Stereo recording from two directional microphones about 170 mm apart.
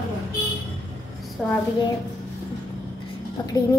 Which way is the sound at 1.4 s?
5° right (ahead or behind).